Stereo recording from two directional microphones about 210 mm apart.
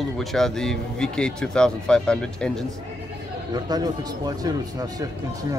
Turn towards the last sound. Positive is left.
turn(degrees=-15)  # may be behind; listen again after turning